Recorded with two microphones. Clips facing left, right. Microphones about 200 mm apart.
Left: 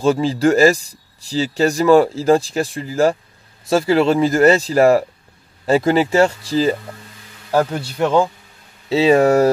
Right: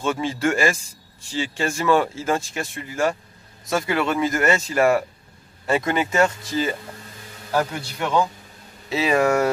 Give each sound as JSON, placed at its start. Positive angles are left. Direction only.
{"t": 0.0, "sound": "speech", "side_deg": 35}
{"t": 8.8, "sound": "speech", "side_deg": 30}